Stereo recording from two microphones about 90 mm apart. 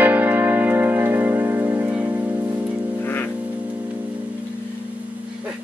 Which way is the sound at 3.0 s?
20° left (ahead or behind).